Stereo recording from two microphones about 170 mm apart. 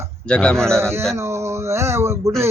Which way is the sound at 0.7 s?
15° right (ahead or behind).